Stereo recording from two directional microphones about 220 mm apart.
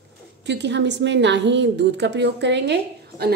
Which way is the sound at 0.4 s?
50° right (ahead or behind).